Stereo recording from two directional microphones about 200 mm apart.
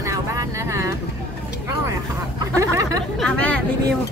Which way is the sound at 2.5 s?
15° right (ahead or behind).